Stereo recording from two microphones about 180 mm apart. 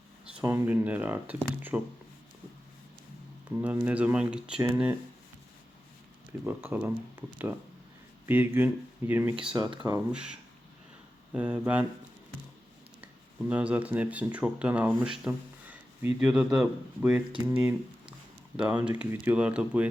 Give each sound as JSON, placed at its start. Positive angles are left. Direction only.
{"t": 0.4, "sound": "speech", "side_deg": -15}
{"t": 3.6, "sound": "speech", "side_deg": -10}
{"t": 6.4, "sound": "speech", "side_deg": -10}
{"t": 9.6, "sound": "speech", "side_deg": -25}
{"t": 10.1, "sound": "speech", "side_deg": -5}
{"t": 13.5, "sound": "speech", "side_deg": -5}